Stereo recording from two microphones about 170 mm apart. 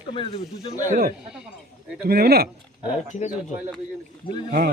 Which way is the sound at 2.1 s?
65° right (ahead or behind).